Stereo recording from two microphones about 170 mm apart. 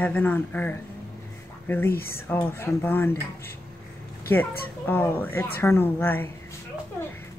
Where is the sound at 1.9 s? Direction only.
60° left (ahead or behind).